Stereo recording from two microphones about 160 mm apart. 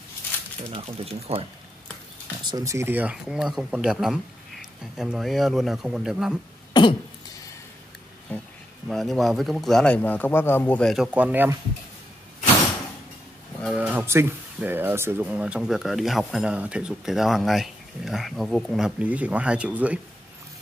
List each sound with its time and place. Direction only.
0.7 s speech: 40° right (ahead or behind)
2.4 s speech: 20° right (ahead or behind); by 6.4 s 5° right (ahead or behind)
6.7 s cough: 30° left (ahead or behind)
8.8 s speech: centre (ahead or behind)
11.1 s speech: 10° right (ahead or behind)
13.7 s speech: 10° right (ahead or behind)